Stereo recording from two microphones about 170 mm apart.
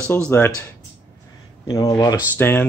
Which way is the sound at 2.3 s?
10° left (ahead or behind).